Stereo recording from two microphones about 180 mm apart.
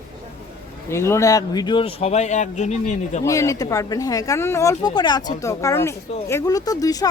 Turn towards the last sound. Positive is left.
turn(degrees=20)  # may be behind; listen again after turning